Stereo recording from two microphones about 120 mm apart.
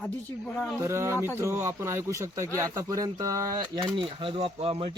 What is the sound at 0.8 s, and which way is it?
Speech, 25° right (ahead or behind).